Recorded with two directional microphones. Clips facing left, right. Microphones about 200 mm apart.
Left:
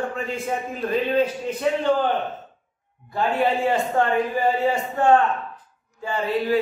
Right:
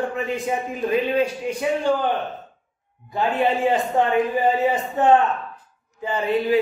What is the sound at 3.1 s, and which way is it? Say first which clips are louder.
A man's voice: right 1 dB; 20° right (ahead or behind).